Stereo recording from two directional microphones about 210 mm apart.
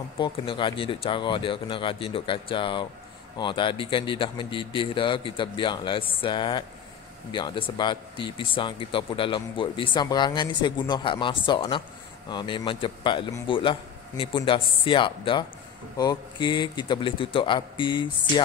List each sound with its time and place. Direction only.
0.2 s speech: 25° left (ahead or behind)